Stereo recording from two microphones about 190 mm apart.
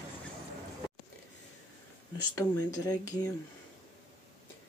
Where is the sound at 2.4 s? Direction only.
20° left (ahead or behind).